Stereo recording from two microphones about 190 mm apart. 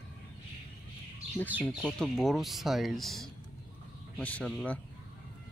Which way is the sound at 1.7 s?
Centre (ahead or behind).